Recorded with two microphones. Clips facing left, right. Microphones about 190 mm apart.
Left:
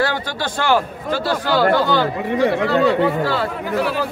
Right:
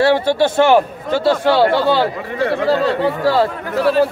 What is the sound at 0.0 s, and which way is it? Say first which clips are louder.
A man's voice: right 8 dB; 25° right (ahead or behind).